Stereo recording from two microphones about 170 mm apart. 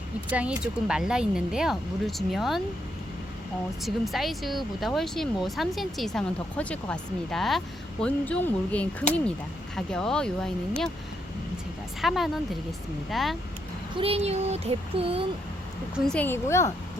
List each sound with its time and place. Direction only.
0.3 s speech: 10° right (ahead or behind)
3.8 s speech: centre (ahead or behind)
12.0 s speech: centre (ahead or behind)
13.9 s child singing: 35° right (ahead or behind)
16.0 s speech: 5° left (ahead or behind)